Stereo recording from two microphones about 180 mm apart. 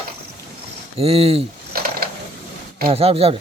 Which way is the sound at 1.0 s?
35° right (ahead or behind).